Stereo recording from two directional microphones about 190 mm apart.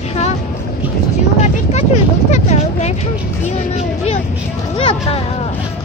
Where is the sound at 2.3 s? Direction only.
35° left (ahead or behind).